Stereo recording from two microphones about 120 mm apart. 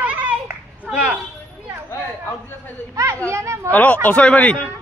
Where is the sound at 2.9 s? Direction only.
25° right (ahead or behind).